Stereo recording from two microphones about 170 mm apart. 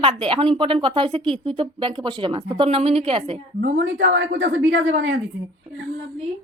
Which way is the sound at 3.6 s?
85° right.